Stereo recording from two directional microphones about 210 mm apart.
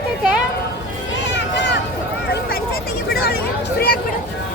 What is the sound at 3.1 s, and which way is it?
Speech, 50° left (ahead or behind).